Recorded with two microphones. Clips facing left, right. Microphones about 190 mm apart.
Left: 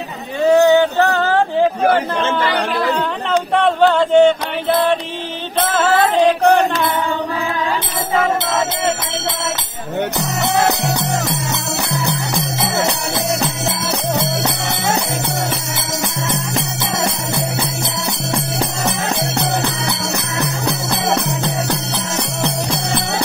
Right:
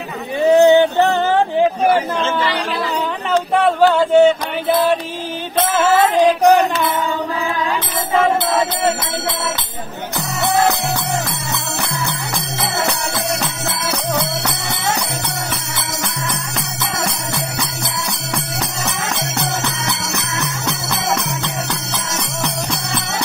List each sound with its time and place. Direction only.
0.4 s a sound: 15° right (ahead or behind)
1.9 s speech: 55° left (ahead or behind)
3.3 s a sound: 5° right (ahead or behind)
5.7 s music: 10° right (ahead or behind)
13.8 s music: 25° left (ahead or behind)
16.3 s jingle bell: 25° left (ahead or behind)
19.9 s jingle bell: 30° left (ahead or behind)